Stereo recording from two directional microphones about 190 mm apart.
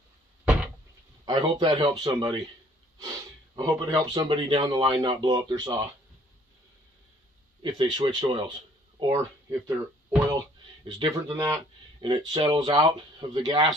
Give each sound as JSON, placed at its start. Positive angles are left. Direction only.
{"t": 1.2, "sound": "speech", "side_deg": -25}
{"t": 7.6, "sound": "speech", "side_deg": -25}
{"t": 10.8, "sound": "speech", "side_deg": -25}